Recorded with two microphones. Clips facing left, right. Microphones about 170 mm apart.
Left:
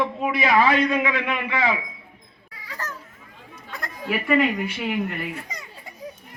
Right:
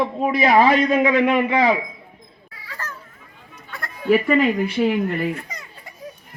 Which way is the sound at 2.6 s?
15° left (ahead or behind).